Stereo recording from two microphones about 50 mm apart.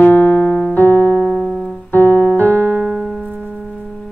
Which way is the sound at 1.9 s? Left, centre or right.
Left.